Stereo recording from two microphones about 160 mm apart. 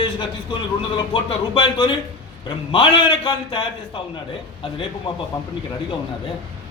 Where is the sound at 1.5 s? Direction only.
30° left (ahead or behind).